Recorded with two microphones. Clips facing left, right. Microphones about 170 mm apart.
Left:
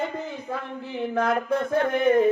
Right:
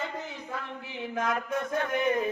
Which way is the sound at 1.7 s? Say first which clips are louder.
Left 7 dB; 50° left (ahead or behind).